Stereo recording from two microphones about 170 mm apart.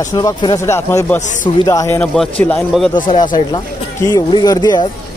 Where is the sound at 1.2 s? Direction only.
45° left (ahead or behind).